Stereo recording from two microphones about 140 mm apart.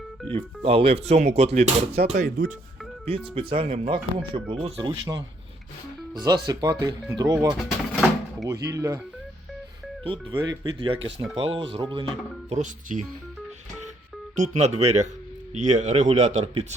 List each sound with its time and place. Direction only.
0.3 s speech: 40° right (ahead or behind)
2.2 s speech: 90° right
3.3 s speech: 40° right (ahead or behind)
4.8 s speech: 30° right (ahead or behind)
7.5 s a sound: centre (ahead or behind)
8.4 s speech: 25° right (ahead or behind)
10.0 s speech: 35° right (ahead or behind)
12.5 s speech: 60° right (ahead or behind)
14.3 s speech: 55° right (ahead or behind)